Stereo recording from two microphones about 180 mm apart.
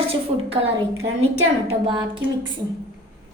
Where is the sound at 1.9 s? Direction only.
25° right (ahead or behind).